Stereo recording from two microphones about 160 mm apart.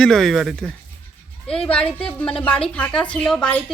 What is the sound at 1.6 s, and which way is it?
Speech, 5° left (ahead or behind).